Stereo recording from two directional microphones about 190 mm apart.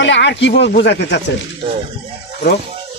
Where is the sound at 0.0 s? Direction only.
65° left (ahead or behind).